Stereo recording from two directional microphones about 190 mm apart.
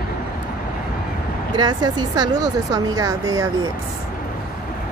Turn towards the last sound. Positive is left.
turn(degrees=-20)  # may be behind; listen again after turning